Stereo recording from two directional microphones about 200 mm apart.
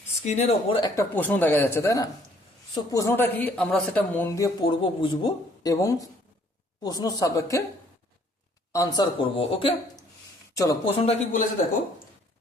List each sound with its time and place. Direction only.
0.3 s speech: 30° left (ahead or behind)
0.8 s speech: 10° left (ahead or behind)
8.7 s speech: 15° left (ahead or behind)
10.9 s speech: 30° left (ahead or behind)